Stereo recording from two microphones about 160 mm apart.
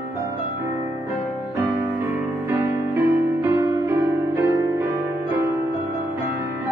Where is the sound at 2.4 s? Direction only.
15° right (ahead or behind).